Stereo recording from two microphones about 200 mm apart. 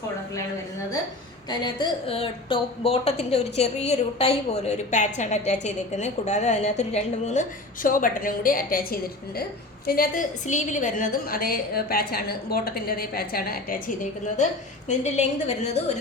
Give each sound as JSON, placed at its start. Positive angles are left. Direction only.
{"t": 1.5, "sound": "a woman's voice", "side_deg": 20}